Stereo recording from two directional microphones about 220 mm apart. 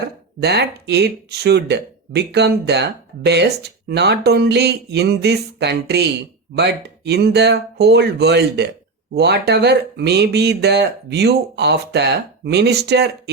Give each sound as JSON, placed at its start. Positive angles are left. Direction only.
{"t": 0.4, "sound": "speech", "side_deg": -50}